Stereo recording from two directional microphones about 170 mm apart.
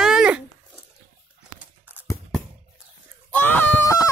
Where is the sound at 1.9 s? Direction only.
10° right (ahead or behind).